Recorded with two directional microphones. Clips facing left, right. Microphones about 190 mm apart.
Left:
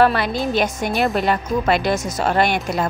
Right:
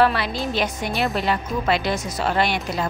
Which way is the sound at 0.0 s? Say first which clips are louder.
Left 3 dB; 50° left (ahead or behind).